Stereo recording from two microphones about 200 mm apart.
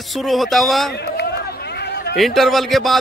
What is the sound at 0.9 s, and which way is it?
Run, 55° left (ahead or behind).